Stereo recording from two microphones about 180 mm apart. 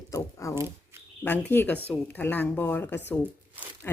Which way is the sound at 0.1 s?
15° left (ahead or behind).